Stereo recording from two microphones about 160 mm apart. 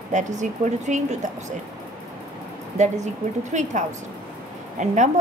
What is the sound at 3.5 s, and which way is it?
Speech, 50° right (ahead or behind).